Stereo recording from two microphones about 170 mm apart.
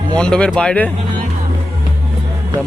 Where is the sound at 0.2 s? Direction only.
5° left (ahead or behind).